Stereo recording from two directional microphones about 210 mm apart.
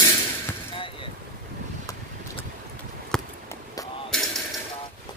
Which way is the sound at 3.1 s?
5° left (ahead or behind).